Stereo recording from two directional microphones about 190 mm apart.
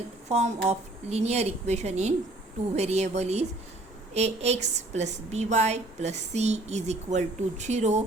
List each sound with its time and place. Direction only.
0.3 s a woman's voice: 35° right (ahead or behind)